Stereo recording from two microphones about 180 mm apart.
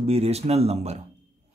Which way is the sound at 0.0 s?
35° right (ahead or behind).